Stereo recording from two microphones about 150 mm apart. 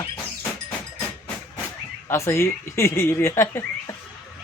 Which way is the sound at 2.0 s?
20° left (ahead or behind).